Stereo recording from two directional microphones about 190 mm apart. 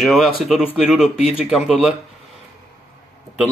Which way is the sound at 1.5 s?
Centre (ahead or behind).